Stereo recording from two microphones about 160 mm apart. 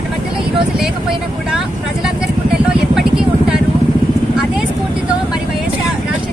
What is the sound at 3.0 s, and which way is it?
Vehicle, 5° right (ahead or behind).